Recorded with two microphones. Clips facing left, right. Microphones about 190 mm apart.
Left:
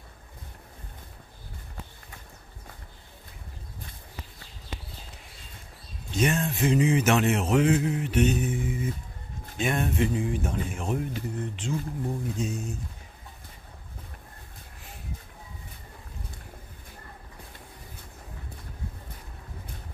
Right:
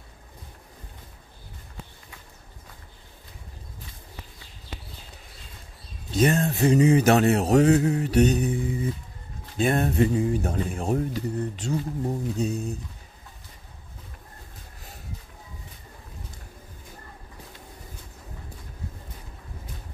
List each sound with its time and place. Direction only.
6.1 s speech: 35° right (ahead or behind)